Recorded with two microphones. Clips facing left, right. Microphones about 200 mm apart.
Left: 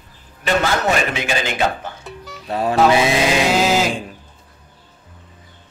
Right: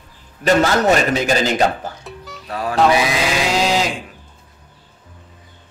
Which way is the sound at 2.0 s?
Centre (ahead or behind).